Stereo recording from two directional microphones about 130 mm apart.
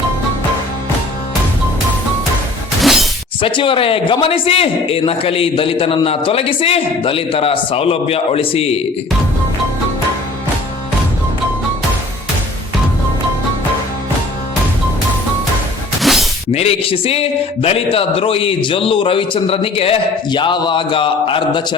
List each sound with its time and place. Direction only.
2.8 s shatter: centre (ahead or behind)
3.4 s a man's voice: 40° left (ahead or behind)
16.0 s music: centre (ahead or behind)
16.5 s a man's voice: 50° left (ahead or behind)